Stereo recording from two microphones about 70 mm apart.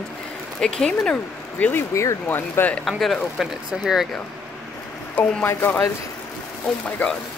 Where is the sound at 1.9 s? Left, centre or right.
Left.